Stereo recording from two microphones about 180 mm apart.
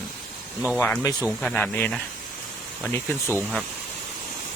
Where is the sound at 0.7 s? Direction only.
10° left (ahead or behind).